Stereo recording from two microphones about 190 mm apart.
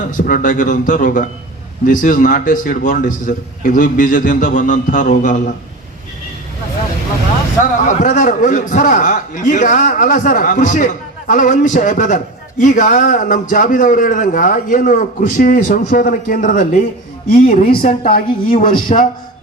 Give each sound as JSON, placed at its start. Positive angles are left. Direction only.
{"t": 0.1, "sound": "a man's voice", "side_deg": 45}
{"t": 7.9, "sound": "a man's voice", "side_deg": 40}